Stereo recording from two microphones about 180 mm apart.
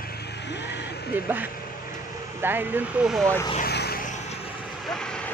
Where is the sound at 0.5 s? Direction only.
70° left (ahead or behind).